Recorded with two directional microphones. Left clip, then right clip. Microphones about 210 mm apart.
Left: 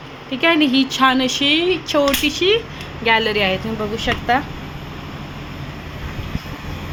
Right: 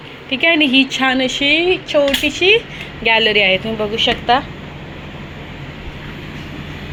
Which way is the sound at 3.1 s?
5° left (ahead or behind).